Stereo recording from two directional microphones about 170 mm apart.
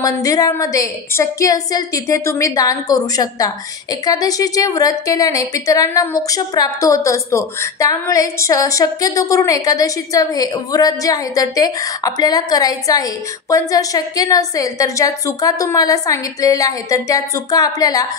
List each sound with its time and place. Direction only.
0.0 s a woman's voice: 20° left (ahead or behind)